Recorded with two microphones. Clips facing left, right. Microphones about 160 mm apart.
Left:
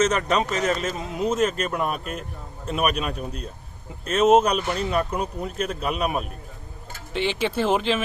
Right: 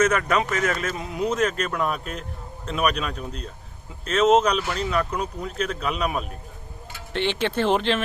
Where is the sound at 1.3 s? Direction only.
5° left (ahead or behind).